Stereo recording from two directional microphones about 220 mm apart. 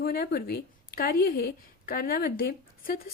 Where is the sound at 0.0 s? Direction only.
45° left (ahead or behind).